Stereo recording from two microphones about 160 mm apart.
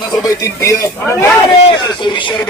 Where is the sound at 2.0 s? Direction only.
30° left (ahead or behind).